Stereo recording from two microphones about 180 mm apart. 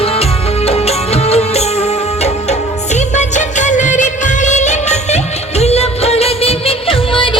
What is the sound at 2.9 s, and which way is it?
Music of bollywood, 40° left (ahead or behind).